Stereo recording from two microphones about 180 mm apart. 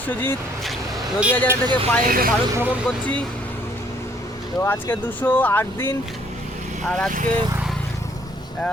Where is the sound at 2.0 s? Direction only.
55° right (ahead or behind).